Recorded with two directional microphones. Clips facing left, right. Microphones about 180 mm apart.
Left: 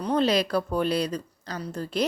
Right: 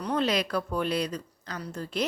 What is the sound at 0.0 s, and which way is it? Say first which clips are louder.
Speech: left 4 dB; 30° left (ahead or behind).